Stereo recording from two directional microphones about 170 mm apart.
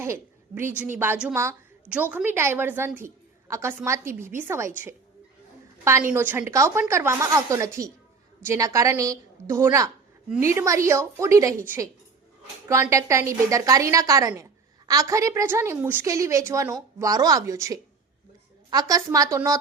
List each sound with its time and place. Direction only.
0.0 s a sound: 15° right (ahead or behind)
0.9 s a woman's voice: 15° right (ahead or behind)
5.8 s a woman's voice: 15° right (ahead or behind)